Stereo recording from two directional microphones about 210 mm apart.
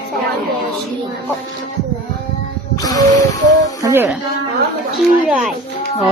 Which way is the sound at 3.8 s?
15° right (ahead or behind).